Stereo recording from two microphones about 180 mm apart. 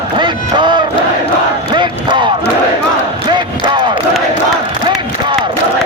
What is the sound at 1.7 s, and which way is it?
Battle cry, 25° right (ahead or behind).